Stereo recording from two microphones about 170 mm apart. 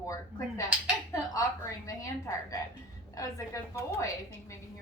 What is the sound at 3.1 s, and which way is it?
Speech, 20° left (ahead or behind).